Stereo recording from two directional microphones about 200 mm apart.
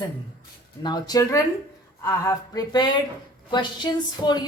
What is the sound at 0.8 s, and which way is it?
Speech, 20° left (ahead or behind).